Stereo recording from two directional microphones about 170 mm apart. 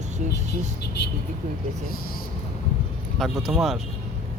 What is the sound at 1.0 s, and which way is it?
Speech, 80° left.